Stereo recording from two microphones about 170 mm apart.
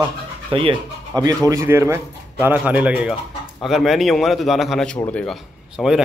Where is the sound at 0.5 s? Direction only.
25° right (ahead or behind); by 5.4 s 5° left (ahead or behind).